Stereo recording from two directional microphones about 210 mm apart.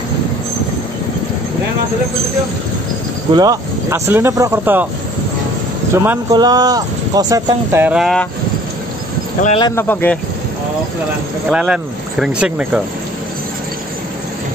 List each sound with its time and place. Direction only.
3.3 s speech: 15° right (ahead or behind)
5.9 s speech: 15° right (ahead or behind); by 8.3 s centre (ahead or behind)
9.6 s speech: 15° left (ahead or behind)
11.5 s speech: 5° right (ahead or behind)